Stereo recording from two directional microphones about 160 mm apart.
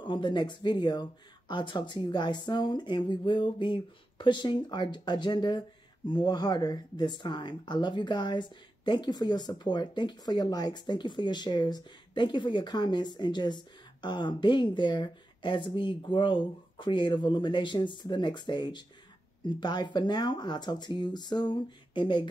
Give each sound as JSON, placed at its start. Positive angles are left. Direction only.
{"t": 0.0, "sound": "speech", "side_deg": 30}